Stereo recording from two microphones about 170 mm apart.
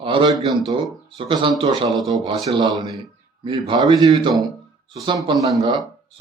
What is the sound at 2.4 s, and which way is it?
A man's voice, 30° right (ahead or behind).